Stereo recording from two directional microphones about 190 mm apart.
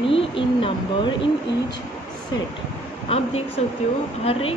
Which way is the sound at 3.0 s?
30° left (ahead or behind).